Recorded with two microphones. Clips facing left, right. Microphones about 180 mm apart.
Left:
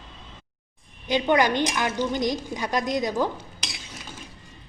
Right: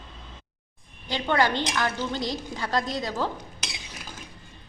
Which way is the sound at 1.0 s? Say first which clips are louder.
Left 3 dB; 20° left (ahead or behind).